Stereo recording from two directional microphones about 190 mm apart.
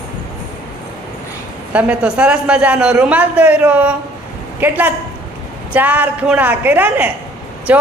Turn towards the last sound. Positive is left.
turn(degrees=-10)  # may be behind; listen again after turning